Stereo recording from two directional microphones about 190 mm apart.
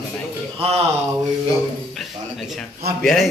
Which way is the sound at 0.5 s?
30° right (ahead or behind).